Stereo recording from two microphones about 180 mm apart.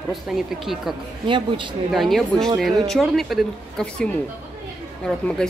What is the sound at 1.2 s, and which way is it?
Speech, 25° right (ahead or behind).